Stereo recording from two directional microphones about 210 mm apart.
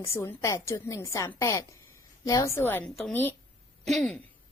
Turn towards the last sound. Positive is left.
turn(degrees=5)  # may be behind; listen again after turning